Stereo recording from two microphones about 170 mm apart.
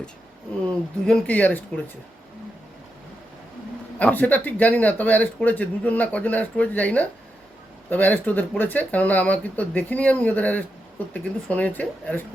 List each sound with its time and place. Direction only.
1.0 s speech: 5° left (ahead or behind)
3.9 s speech: 10° left (ahead or behind)